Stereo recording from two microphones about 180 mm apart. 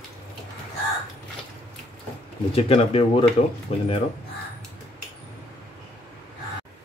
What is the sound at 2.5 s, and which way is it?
Speech, 35° left (ahead or behind).